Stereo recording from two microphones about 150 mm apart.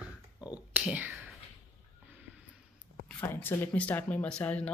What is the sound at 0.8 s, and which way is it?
Speech, 10° right (ahead or behind).